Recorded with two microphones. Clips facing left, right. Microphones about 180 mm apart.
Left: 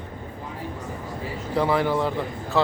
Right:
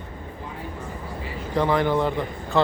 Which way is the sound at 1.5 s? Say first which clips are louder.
Right 1 dB; 5° left (ahead or behind).